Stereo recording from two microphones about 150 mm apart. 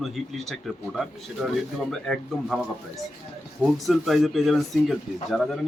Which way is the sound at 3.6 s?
Centre (ahead or behind).